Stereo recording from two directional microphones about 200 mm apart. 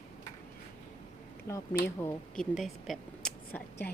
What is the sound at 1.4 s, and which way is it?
Speech, 15° left (ahead or behind).